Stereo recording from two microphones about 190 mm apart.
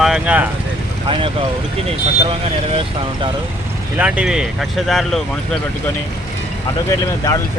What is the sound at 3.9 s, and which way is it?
Speech, 5° right (ahead or behind).